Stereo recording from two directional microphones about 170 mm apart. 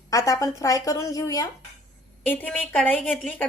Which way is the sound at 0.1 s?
20° left (ahead or behind).